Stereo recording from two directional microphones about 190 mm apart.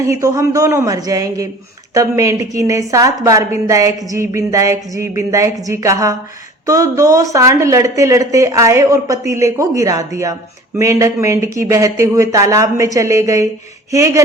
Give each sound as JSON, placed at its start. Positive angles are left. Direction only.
{"t": 0.0, "sound": "a woman's voice", "side_deg": -15}